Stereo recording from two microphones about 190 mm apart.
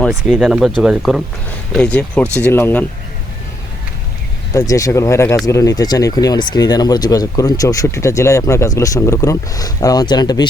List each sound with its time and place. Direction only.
0.0 s speech: centre (ahead or behind)
4.5 s speech: 15° left (ahead or behind)